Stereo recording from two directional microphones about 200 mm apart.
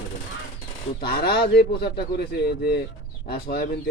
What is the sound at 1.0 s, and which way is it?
A man's voice, 50° left (ahead or behind).